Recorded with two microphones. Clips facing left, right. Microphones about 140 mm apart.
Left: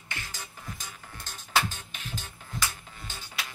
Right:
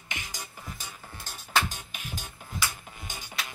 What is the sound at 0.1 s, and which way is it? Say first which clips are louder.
Music: right 1 dB; 15° right (ahead or behind).